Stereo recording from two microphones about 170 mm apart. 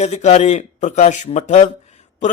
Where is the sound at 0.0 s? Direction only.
45° left (ahead or behind).